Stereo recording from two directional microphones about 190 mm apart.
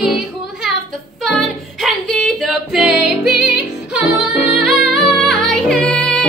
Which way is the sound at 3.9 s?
Centre (ahead or behind).